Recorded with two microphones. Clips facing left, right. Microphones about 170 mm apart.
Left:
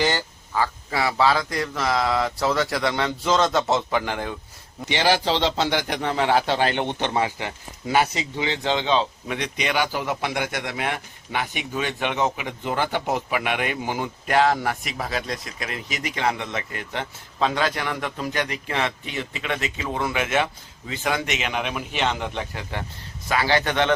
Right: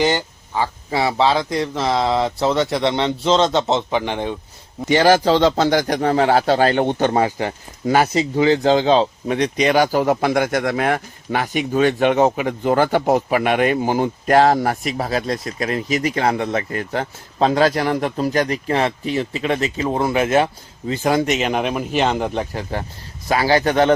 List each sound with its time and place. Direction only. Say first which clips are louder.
0.0 s a man's voice: right 5 dB; 20° right (ahead or behind)
4.9 s speech: right 8 dB; 45° right (ahead or behind)